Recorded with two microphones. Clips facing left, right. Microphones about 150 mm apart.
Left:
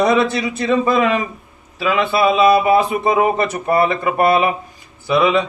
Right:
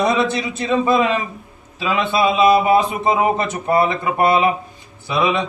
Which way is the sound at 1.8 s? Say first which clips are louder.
Left 2 dB; 20° right (ahead or behind).